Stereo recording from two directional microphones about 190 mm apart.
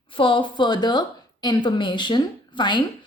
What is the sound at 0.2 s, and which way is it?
A woman's voice, 25° left (ahead or behind).